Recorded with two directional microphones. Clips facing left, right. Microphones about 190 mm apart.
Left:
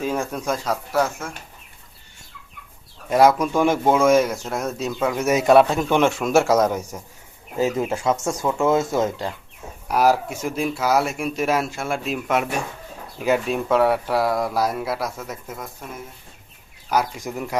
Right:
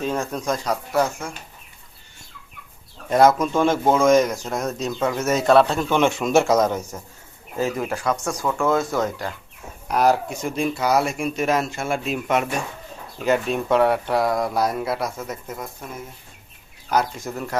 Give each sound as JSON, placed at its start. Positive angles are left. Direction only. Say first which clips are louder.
{"t": 0.0, "sound": "speech", "louder": "even", "side_deg": 10}
{"t": 3.1, "sound": "speech", "louder": "even", "side_deg": 10}
{"t": 6.1, "sound": "speech", "louder": "even", "side_deg": 0}
{"t": 7.5, "sound": "speech", "louder": "left 2 dB", "side_deg": 20}
{"t": 9.9, "sound": "speech", "louder": "even", "side_deg": 5}
{"t": 16.9, "sound": "speech", "louder": "even", "side_deg": 10}